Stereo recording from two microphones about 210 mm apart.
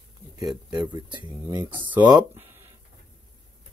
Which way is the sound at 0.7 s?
20° right (ahead or behind).